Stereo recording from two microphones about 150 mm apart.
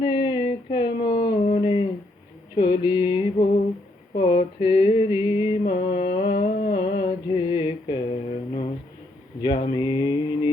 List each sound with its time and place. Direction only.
0.0 s a sound: 35° left (ahead or behind)
6.1 s humming: 40° left (ahead or behind)
6.4 s humming: 60° left (ahead or behind)
6.7 s mantra: 40° left (ahead or behind)